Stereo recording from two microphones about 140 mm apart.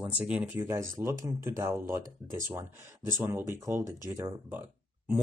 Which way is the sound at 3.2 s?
15° right (ahead or behind).